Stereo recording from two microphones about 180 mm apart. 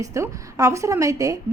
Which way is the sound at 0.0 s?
20° right (ahead or behind).